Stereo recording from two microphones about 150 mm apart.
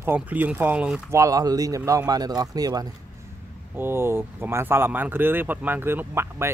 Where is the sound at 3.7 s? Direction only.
15° right (ahead or behind).